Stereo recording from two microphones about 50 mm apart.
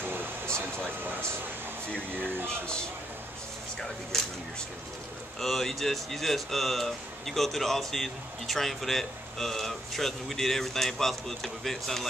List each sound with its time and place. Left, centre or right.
0.0 s air conditioning: right
3.8 s speech: centre